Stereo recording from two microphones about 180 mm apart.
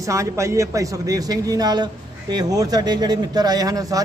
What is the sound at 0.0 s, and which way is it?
A man's voice, 15° right (ahead or behind).